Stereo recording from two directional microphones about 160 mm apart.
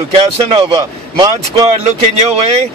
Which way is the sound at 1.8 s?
40° right (ahead or behind).